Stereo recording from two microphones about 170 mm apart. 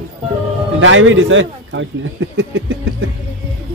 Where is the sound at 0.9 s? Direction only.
90° right.